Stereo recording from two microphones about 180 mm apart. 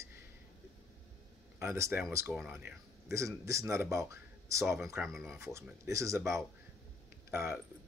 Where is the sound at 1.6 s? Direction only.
15° right (ahead or behind).